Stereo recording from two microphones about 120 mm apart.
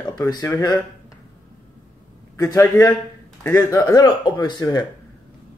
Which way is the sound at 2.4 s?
25° left (ahead or behind).